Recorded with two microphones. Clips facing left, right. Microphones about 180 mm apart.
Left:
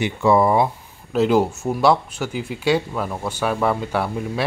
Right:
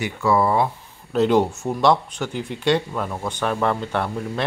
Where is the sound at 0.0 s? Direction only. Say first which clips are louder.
Left 3 dB; 20° left (ahead or behind).